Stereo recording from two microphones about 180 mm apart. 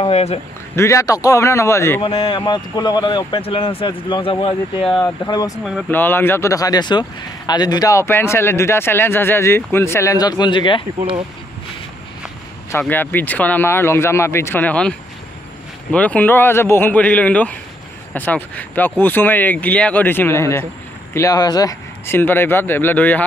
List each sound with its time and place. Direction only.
0.0 s speech: 35° left (ahead or behind)
0.7 s speech: 15° left (ahead or behind)
2.0 s speech: 30° left (ahead or behind)
5.2 s speech: 20° left (ahead or behind)
11.0 s speech: 30° right (ahead or behind)
12.7 s speech: 10° left (ahead or behind)